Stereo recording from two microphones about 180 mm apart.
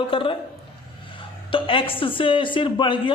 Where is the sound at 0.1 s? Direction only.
30° left (ahead or behind).